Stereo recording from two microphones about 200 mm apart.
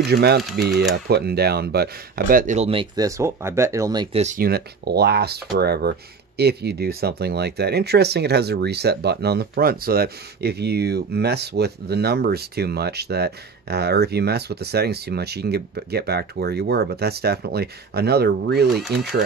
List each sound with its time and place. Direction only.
0.0 s speech: 55° right (ahead or behind); by 4.2 s 20° right (ahead or behind)
4.2 s speech: 35° right (ahead or behind)
4.5 s speech: 50° right (ahead or behind)
18.8 s speech: centre (ahead or behind)